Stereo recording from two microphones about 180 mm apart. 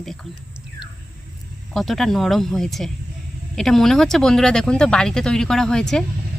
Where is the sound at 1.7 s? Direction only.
Centre (ahead or behind).